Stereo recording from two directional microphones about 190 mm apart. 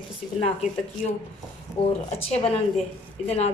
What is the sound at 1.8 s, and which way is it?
Speech, 30° left (ahead or behind).